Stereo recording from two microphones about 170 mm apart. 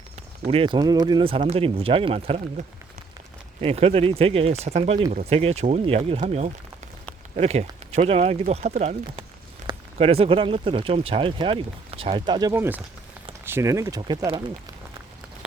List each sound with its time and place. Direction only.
0.4 s speech: 35° right (ahead or behind)
9.6 s zipper: 45° right (ahead or behind)
10.0 s speech: 35° right (ahead or behind)
12.5 s speech: 10° right (ahead or behind)